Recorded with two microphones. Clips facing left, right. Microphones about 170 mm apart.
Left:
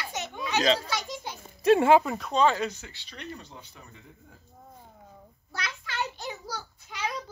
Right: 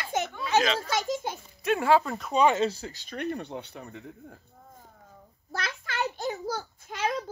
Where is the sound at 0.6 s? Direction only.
35° left (ahead or behind).